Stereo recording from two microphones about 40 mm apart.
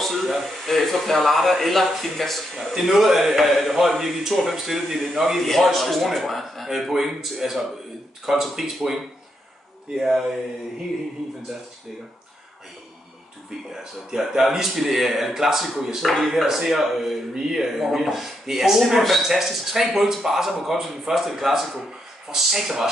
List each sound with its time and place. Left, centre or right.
0.0 s a sound: centre
0.7 s speech: centre
2.5 s a man's voice: centre
5.4 s a man's voice: centre
14.1 s a man's voice: centre
16.0 s speech: centre
16.4 s speech: centre
17.3 s a man's voice: centre
17.6 s a man's voice: centre